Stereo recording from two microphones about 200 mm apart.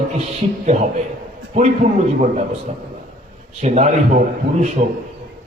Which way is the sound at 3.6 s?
35° right (ahead or behind).